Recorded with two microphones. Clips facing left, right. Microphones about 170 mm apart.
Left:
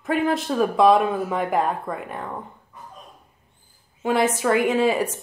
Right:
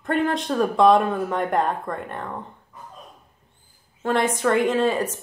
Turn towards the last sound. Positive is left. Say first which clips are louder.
# left 1 dB
turn(degrees=10)  # may be behind; listen again after turning